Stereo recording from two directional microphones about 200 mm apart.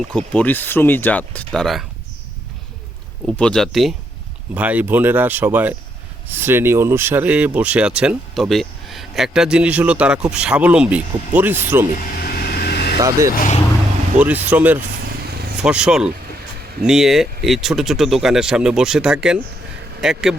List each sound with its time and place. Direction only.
0.1 s speech: 5° left (ahead or behind)
3.3 s speech: 5° left (ahead or behind)
12.1 s vehicle: 50° left (ahead or behind)
13.0 s speech: 15° right (ahead or behind)